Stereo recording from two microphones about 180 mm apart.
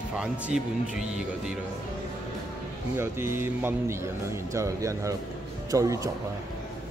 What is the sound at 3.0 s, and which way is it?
Speech, 15° right (ahead or behind).